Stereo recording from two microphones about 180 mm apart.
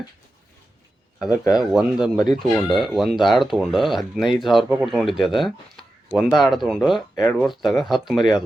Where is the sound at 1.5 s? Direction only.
5° right (ahead or behind).